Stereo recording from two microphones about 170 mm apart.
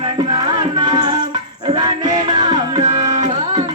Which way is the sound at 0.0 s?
25° right (ahead or behind).